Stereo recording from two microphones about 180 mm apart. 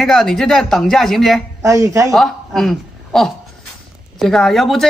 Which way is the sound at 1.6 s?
15° right (ahead or behind).